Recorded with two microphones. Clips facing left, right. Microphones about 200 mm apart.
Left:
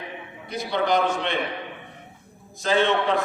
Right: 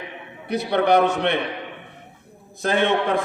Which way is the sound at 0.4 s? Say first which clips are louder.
Right 5 dB; 65° right (ahead or behind).